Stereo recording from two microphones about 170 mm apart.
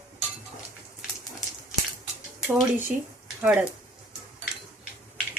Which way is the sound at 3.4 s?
10° right (ahead or behind).